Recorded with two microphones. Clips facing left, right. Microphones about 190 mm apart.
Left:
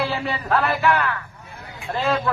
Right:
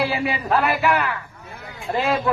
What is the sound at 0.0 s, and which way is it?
Speech, 10° right (ahead or behind).